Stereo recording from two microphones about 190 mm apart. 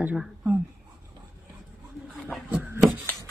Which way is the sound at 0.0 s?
5° right (ahead or behind).